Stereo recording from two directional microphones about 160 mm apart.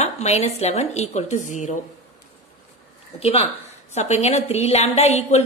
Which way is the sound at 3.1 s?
40° left (ahead or behind).